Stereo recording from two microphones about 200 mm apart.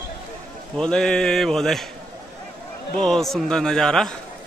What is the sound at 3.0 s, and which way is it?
Speech, centre (ahead or behind).